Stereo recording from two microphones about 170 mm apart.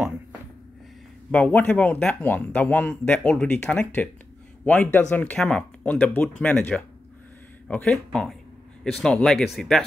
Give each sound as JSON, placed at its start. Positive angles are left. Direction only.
{"t": 1.3, "sound": "speech", "side_deg": 10}